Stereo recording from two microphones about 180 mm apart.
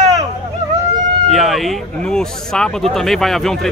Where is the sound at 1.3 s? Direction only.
Centre (ahead or behind).